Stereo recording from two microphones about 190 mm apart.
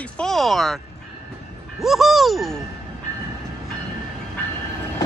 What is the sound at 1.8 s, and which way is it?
Speech, centre (ahead or behind).